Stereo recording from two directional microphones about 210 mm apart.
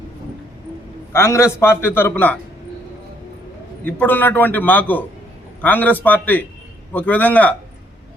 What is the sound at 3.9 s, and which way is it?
A man's voice, 10° left (ahead or behind).